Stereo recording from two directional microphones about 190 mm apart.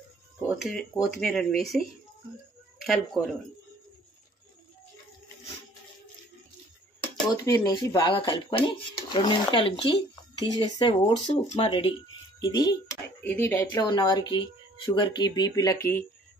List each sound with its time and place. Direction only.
0.5 s speech: centre (ahead or behind)
7.3 s speech: 20° left (ahead or behind)